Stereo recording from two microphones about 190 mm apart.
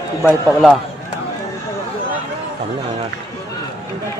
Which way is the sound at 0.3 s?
Centre (ahead or behind).